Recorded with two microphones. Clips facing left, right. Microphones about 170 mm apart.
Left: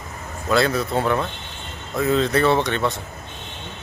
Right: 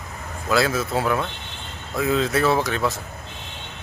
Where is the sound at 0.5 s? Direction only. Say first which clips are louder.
Left 2 dB; centre (ahead or behind).